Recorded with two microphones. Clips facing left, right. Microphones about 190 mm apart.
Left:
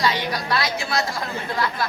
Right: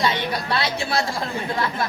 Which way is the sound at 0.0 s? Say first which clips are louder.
Even; 25° right (ahead or behind).